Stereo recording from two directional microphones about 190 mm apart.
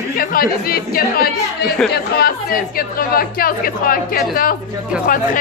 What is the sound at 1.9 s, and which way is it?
Chatter, 55° left (ahead or behind).